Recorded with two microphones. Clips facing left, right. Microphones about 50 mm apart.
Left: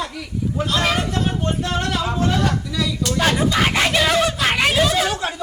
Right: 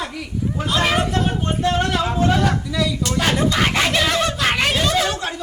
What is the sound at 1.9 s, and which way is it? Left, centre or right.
Vehicle, centre.